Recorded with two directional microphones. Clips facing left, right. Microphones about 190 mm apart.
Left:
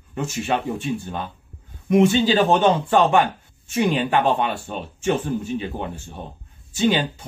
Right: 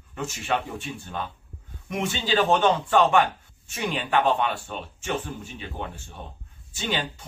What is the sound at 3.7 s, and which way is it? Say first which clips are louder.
Speech: left 6 dB; 15° left (ahead or behind).